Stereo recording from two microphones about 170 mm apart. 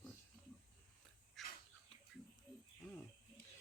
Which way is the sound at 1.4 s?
Centre (ahead or behind).